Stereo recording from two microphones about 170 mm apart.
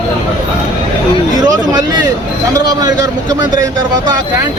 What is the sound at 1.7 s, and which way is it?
A man's voice, 20° right (ahead or behind).